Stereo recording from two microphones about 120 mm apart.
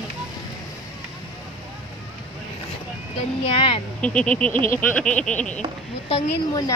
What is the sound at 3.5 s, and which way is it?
Speech, 50° left (ahead or behind).